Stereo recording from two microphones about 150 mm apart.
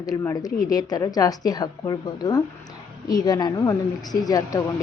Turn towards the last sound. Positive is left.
turn(degrees=25)  # may be behind; listen again after turning